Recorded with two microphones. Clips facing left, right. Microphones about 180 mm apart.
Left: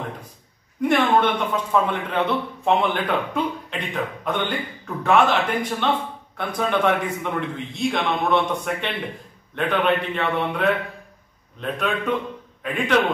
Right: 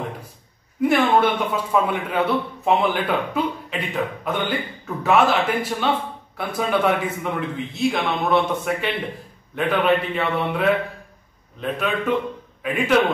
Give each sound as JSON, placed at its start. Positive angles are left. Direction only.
{"t": 0.7, "sound": "a man's voice", "side_deg": -5}